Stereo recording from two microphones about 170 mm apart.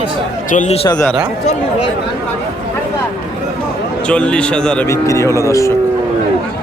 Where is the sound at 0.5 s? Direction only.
40° left (ahead or behind).